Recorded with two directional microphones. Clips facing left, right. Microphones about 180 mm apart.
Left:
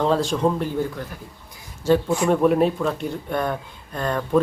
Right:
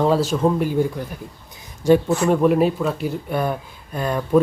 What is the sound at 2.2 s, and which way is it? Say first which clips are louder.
Speech: right 1 dB; centre (ahead or behind).